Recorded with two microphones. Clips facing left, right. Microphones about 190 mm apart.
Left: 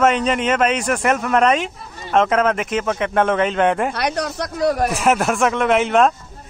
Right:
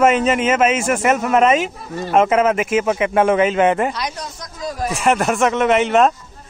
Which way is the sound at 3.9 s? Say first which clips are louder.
Left 4 dB; 65° left (ahead or behind).